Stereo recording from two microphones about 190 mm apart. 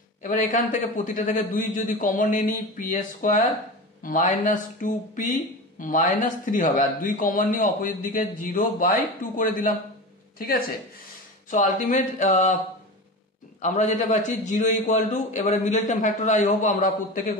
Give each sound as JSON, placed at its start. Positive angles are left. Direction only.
{"t": 0.2, "sound": "speech", "side_deg": 45}
{"t": 11.5, "sound": "speech", "side_deg": 40}
{"t": 13.6, "sound": "a man's voice", "side_deg": 40}